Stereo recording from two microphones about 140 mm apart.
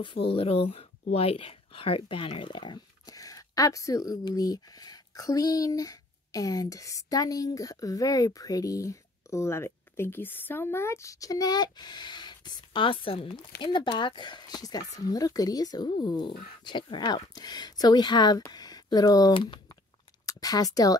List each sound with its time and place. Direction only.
0.0 s speech: 40° left (ahead or behind)